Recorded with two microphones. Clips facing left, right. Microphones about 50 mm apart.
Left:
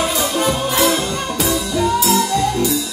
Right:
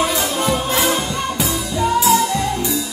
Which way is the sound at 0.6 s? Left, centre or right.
Centre.